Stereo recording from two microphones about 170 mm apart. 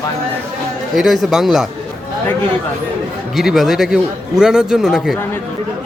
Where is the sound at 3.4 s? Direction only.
Centre (ahead or behind).